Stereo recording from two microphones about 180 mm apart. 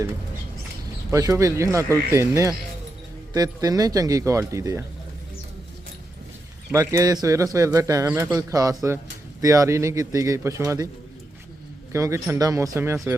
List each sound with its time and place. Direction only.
1.1 s speech: 20° right (ahead or behind)
6.7 s speech: 20° right (ahead or behind)
11.9 s speech: 15° right (ahead or behind)